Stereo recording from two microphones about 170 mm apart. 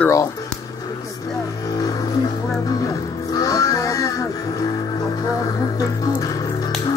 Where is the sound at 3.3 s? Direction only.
20° left (ahead or behind).